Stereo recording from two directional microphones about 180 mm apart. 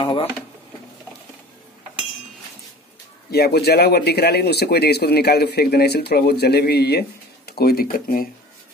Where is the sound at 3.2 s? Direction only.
60° left (ahead or behind).